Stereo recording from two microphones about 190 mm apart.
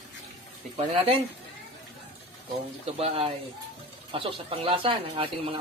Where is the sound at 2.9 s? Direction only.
30° right (ahead or behind).